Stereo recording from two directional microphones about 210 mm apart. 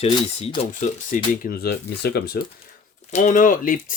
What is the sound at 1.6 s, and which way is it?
Speech, 50° left (ahead or behind).